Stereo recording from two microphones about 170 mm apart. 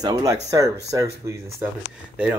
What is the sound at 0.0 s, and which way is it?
Speech, 20° right (ahead or behind).